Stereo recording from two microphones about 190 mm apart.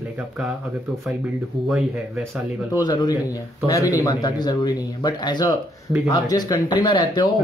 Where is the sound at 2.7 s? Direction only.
20° left (ahead or behind).